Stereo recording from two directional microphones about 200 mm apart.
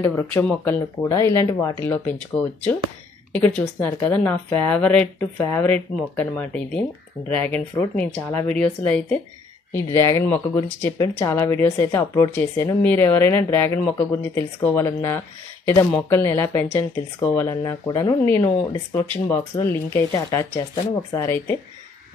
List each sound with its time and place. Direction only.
0.0 s speech: 5° left (ahead or behind)